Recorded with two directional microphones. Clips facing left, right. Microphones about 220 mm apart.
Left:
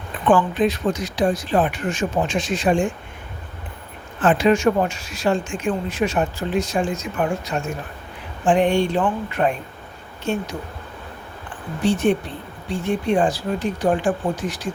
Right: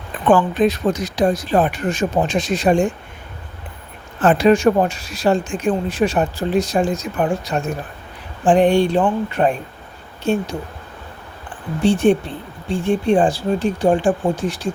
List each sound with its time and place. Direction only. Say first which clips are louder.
0.3 s speech: right 3 dB; 40° right (ahead or behind)
4.2 s speech: right 3 dB; 40° right (ahead or behind)
11.8 s speech: right 4 dB; 30° right (ahead or behind)